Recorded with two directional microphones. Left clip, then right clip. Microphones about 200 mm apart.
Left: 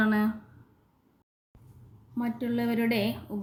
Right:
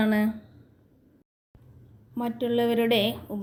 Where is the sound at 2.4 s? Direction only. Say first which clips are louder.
Right 7 dB; 30° right (ahead or behind).